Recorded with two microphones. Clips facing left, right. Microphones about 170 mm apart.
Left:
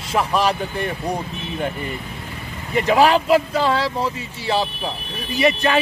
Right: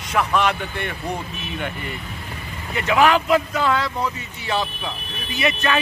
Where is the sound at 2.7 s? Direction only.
35° left (ahead or behind).